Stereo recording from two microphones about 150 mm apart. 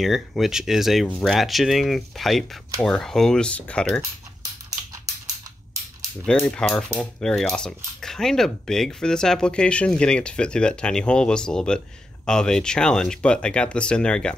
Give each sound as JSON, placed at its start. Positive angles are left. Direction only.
{"t": 0.0, "sound": "speech", "side_deg": 0}
{"t": 4.6, "sound": "a sound", "side_deg": -25}
{"t": 6.2, "sound": "speech", "side_deg": 5}